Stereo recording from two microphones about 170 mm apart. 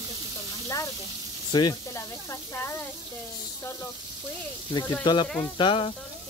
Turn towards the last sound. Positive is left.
turn(degrees=30)  # may be behind; listen again after turning